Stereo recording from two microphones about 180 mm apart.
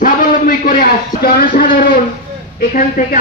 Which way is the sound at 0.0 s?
50° left (ahead or behind).